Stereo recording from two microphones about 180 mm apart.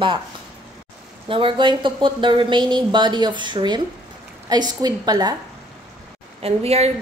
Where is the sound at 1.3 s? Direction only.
30° right (ahead or behind).